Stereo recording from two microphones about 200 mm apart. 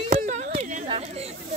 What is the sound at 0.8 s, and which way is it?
Speech, 30° right (ahead or behind).